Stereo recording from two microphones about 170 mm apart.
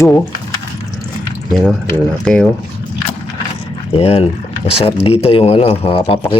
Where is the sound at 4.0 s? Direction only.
35° left (ahead or behind).